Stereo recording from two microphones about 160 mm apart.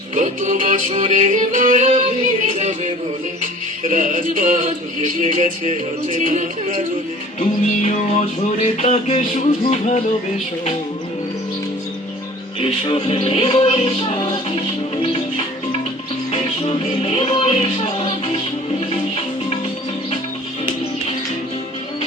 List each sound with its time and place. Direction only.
0.1 s music: 50° right (ahead or behind)
7.3 s music: 50° left (ahead or behind)
12.5 s music: 35° left (ahead or behind)
16.3 s music: 40° left (ahead or behind)